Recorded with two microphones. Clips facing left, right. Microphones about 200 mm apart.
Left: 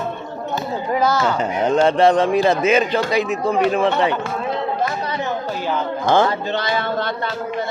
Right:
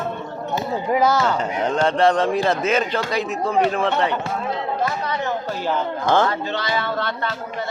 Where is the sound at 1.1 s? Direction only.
Centre (ahead or behind).